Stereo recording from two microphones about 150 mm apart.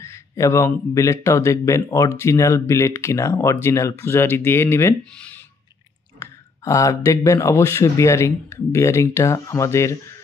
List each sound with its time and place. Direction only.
0.0 s speech: 20° left (ahead or behind)